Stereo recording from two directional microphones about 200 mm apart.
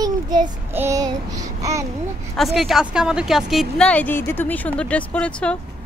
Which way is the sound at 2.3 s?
Centre (ahead or behind).